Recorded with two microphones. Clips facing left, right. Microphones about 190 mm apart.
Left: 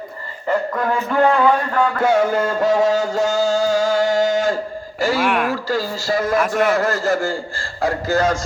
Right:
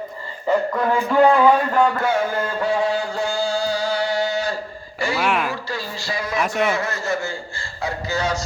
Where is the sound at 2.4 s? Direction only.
45° left (ahead or behind).